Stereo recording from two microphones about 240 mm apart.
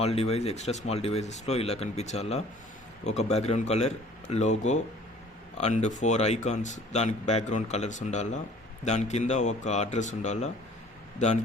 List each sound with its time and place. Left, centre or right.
0.0 s speech: left